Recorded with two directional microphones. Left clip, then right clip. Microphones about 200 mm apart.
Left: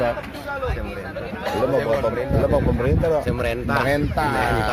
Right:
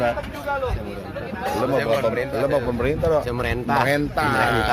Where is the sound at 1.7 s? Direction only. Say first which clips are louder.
Even; 15° left (ahead or behind).